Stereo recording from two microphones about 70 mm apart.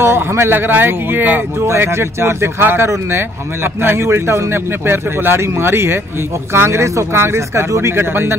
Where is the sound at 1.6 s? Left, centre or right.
Right.